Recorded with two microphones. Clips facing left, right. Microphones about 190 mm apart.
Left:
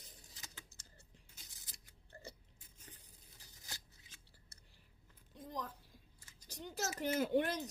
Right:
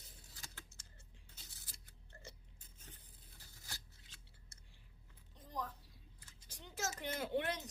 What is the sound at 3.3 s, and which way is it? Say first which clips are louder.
Tearing: left 1 dB; 20° left (ahead or behind).